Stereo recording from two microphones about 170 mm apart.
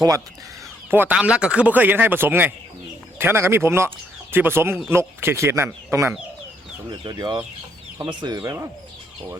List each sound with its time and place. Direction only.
0.9 s speech: 10° right (ahead or behind)
6.9 s speech: 25° right (ahead or behind)